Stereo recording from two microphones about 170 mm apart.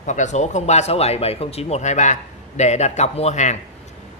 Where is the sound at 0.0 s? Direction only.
45° left (ahead or behind).